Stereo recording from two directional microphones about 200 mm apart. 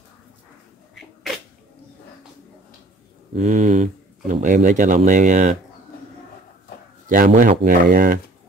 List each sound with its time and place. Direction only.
3.3 s speech: 35° right (ahead or behind)
7.1 s speech: 45° right (ahead or behind)